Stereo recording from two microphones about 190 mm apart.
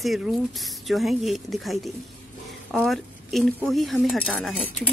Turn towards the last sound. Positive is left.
turn(degrees=5)  # may be behind; listen again after turning